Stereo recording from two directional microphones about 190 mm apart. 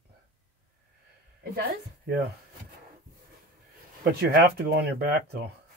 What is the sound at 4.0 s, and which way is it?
Speech, 55° right (ahead or behind).